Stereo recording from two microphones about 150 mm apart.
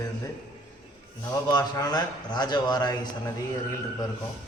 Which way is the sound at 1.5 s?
25° left (ahead or behind).